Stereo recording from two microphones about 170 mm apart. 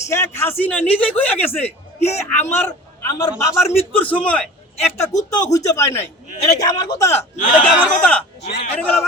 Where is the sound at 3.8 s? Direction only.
10° left (ahead or behind).